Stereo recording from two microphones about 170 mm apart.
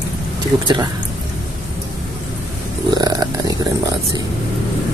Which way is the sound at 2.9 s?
20° right (ahead or behind).